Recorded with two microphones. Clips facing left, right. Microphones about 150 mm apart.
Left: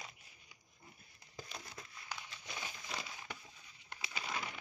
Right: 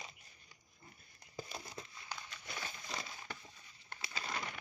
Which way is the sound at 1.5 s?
25° right (ahead or behind).